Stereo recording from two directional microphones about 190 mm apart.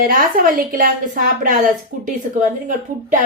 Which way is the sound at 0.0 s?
45° right (ahead or behind).